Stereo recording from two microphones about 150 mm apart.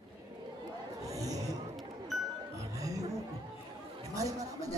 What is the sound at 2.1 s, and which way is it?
Music, centre (ahead or behind).